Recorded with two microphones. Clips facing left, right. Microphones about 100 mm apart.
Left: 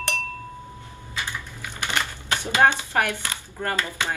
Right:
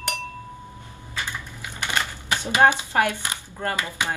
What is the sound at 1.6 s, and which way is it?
Typewriter, 20° right (ahead or behind).